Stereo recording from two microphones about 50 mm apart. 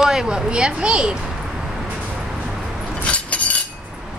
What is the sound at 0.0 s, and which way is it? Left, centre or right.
Speech, centre.